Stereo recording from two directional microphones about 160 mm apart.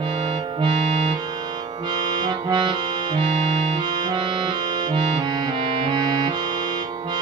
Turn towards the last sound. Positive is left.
turn(degrees=-30)  # may be behind; listen again after turning